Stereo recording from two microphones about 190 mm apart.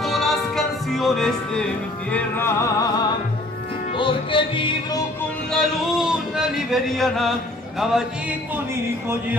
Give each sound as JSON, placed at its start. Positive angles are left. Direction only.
{"t": 0.0, "sound": "music", "side_deg": 0}
{"t": 5.5, "sound": "music", "side_deg": 0}